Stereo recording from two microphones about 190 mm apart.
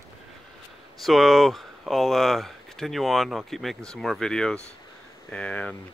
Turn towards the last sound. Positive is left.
turn(degrees=5)  # may be behind; listen again after turning